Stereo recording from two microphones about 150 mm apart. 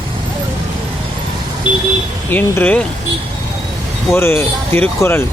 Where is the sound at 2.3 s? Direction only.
10° left (ahead or behind).